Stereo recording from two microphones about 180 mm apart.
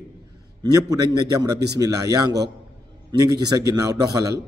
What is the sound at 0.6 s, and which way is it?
A man's voice, 20° right (ahead or behind).